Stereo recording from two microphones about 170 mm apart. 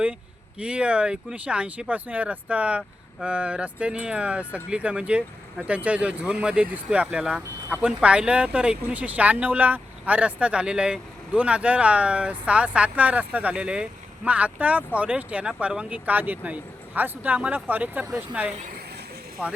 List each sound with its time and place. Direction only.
0.6 s speech: 5° right (ahead or behind)